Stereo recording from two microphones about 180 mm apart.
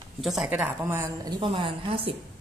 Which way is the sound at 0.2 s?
Centre (ahead or behind).